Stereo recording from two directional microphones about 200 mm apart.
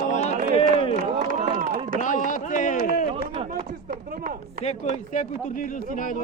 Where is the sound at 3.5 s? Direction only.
45° right (ahead or behind).